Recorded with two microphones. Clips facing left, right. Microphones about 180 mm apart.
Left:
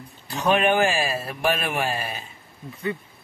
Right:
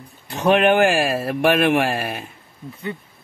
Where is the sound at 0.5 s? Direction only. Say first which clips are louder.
Right 5 dB; 65° right (ahead or behind).